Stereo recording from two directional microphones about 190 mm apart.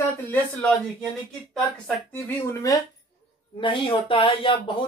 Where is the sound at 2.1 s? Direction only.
15° left (ahead or behind).